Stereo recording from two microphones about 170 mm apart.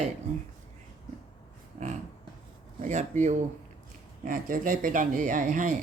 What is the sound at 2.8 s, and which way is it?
Speech, 45° right (ahead or behind).